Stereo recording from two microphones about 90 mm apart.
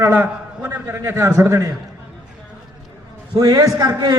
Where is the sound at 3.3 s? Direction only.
50° right (ahead or behind).